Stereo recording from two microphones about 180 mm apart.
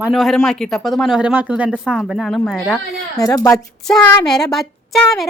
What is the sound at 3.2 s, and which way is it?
Speech, 20° left (ahead or behind).